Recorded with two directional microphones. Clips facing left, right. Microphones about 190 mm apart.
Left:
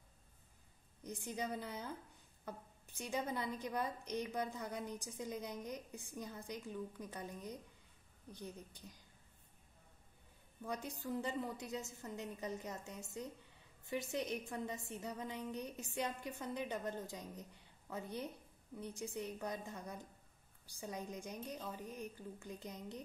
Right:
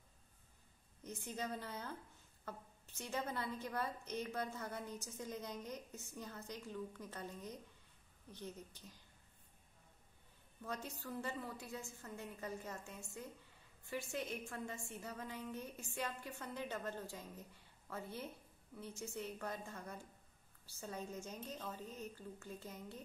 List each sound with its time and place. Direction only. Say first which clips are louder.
1.0 s a woman's voice: left 2 dB; 15° left (ahead or behind)
10.6 s a woman's voice: left 3 dB; 15° left (ahead or behind)